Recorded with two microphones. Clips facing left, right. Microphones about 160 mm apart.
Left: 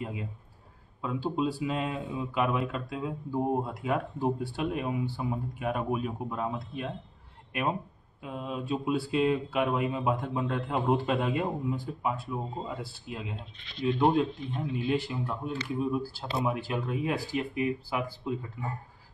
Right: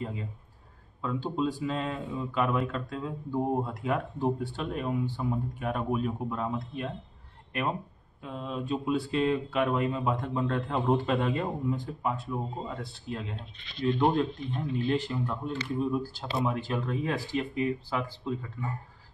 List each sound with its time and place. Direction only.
0.0 s speech: 10° left (ahead or behind)
8.2 s speech: 5° left (ahead or behind)